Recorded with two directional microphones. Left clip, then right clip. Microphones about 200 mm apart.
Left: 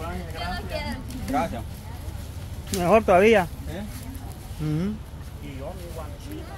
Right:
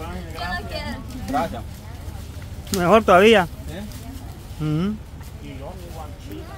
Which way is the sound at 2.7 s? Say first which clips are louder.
Right 4 dB; 25° right (ahead or behind).